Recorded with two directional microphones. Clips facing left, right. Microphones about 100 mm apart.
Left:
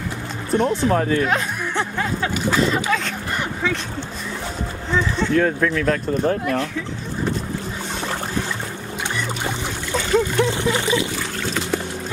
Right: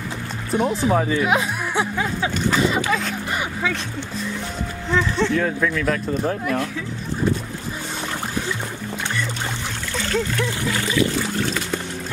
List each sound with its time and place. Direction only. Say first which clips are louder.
0.5 s speech: left 1 dB; 5° right (ahead or behind)
5.2 s speech: left 2 dB; centre (ahead or behind)
10.3 s a sound: left 4 dB; 20° left (ahead or behind)